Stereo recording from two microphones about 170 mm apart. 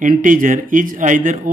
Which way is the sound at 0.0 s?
50° right (ahead or behind).